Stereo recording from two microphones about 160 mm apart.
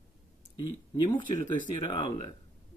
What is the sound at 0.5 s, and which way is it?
Speech, 25° left (ahead or behind).